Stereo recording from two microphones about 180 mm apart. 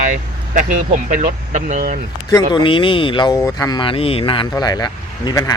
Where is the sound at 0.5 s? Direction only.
45° right (ahead or behind).